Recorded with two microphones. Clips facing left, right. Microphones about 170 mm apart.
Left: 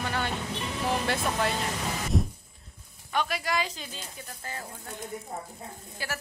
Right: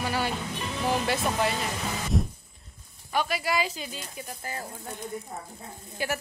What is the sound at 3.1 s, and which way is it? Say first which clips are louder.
Speech: right 2 dB; 5° right (ahead or behind).